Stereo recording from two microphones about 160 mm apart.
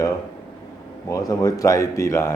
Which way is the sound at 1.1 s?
20° left (ahead or behind).